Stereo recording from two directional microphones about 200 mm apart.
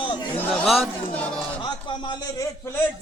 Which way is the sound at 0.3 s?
Centre (ahead or behind).